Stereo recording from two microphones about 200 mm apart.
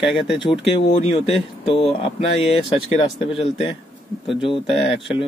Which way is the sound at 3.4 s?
30° left (ahead or behind).